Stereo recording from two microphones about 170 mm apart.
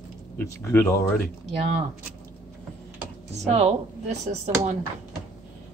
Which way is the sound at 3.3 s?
40° right (ahead or behind).